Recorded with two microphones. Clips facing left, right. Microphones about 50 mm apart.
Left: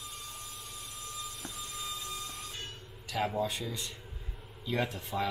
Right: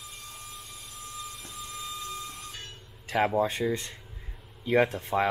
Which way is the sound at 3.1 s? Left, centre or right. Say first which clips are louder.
Right 7 dB; right.